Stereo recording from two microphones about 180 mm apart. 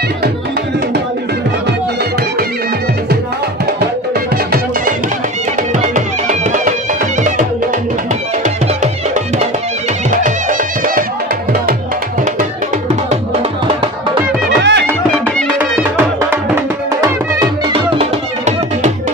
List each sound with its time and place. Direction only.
5.8 s music: 45° right (ahead or behind)
14.6 s music: 75° right (ahead or behind)
17.9 s music: 40° right (ahead or behind)